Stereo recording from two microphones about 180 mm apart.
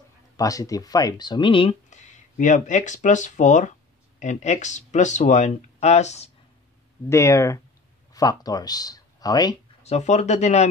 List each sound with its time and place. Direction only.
0.4 s speech: 20° left (ahead or behind); by 6.3 s 40° left (ahead or behind)
7.1 s speech: 15° left (ahead or behind)
9.8 s speech: 40° left (ahead or behind)